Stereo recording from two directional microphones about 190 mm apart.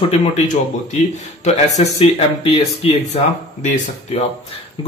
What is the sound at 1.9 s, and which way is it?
Speech, 30° left (ahead or behind).